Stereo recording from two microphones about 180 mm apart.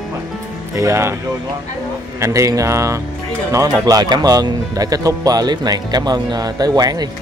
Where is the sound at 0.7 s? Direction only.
15° right (ahead or behind).